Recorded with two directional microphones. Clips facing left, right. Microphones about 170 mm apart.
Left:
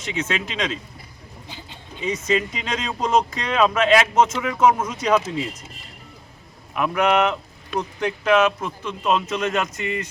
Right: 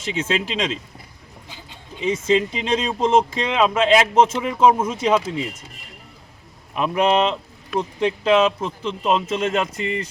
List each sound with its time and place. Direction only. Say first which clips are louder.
0.0 s speech: right 3 dB; 30° right (ahead or behind)
2.0 s speech: right 4 dB; 30° right (ahead or behind)
6.7 s speech: right 1 dB; 25° right (ahead or behind)